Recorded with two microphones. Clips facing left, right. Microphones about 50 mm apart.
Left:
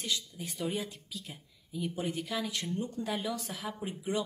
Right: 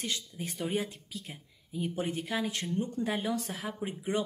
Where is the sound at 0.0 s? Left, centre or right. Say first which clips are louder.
Even; right.